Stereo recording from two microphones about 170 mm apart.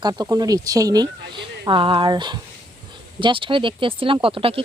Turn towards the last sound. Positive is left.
turn(degrees=-30)  # may be behind; listen again after turning